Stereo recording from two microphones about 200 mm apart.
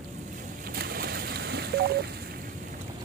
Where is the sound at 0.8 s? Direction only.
50° right (ahead or behind).